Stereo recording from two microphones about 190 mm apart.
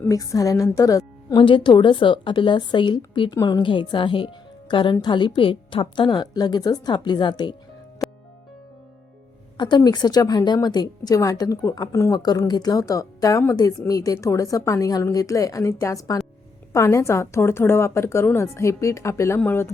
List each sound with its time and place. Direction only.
0.0 s a woman's voice: 15° left (ahead or behind)
9.6 s a woman's voice: 25° left (ahead or behind)